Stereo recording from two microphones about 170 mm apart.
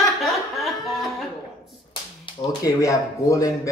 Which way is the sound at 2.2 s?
25° left (ahead or behind).